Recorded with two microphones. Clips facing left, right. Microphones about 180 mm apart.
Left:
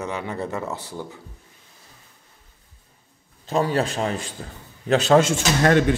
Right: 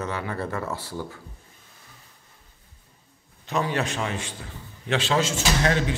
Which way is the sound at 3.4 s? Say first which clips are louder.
Left 4 dB; 35° left (ahead or behind).